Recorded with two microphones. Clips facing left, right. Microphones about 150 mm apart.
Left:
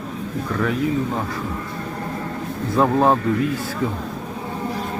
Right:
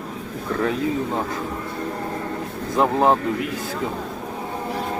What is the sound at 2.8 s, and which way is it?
Speech, 20° right (ahead or behind).